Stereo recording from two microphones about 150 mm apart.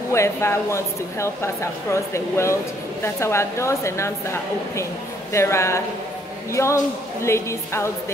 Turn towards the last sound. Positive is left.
turn(degrees=20)  # may be behind; listen again after turning